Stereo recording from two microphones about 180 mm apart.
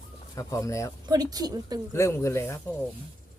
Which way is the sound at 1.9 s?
15° left (ahead or behind).